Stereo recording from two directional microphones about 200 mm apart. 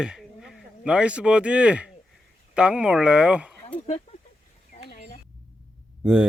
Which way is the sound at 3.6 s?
30° left (ahead or behind).